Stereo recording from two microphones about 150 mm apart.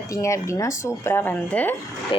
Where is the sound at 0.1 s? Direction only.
20° left (ahead or behind).